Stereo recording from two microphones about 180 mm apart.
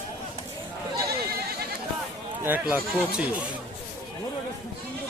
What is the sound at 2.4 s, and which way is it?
Speech, 10° right (ahead or behind).